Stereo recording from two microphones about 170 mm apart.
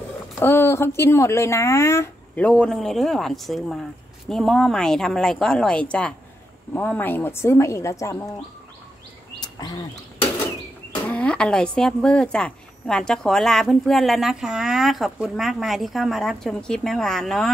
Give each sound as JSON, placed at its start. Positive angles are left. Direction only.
{"t": 0.4, "sound": "a woman's voice", "side_deg": 15}
{"t": 9.4, "sound": "bird", "side_deg": 25}
{"t": 11.1, "sound": "a woman's voice", "side_deg": 10}